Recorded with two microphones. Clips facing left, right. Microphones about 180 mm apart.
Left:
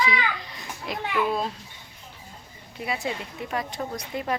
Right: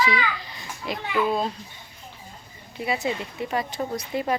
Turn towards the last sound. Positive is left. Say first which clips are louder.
# right 3 dB
turn(degrees=-5)  # may be behind; listen again after turning